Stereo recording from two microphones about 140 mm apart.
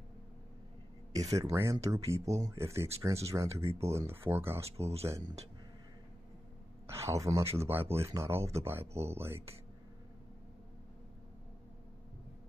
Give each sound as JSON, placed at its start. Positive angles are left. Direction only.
{"t": 1.4, "sound": "speech", "side_deg": -20}
{"t": 4.6, "sound": "speech", "side_deg": -45}
{"t": 6.9, "sound": "speech", "side_deg": -20}